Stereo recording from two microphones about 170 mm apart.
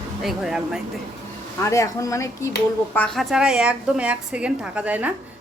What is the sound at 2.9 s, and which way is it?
A woman's voice, 5° left (ahead or behind).